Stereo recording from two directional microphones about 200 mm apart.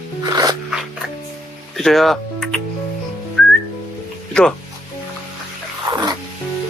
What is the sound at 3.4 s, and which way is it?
Whistling, centre (ahead or behind).